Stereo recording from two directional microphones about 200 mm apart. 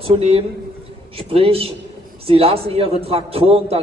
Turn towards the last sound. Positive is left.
turn(degrees=-30)  # may be behind; listen again after turning